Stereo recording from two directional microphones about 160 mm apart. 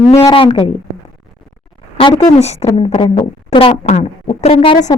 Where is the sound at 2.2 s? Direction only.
45° left (ahead or behind).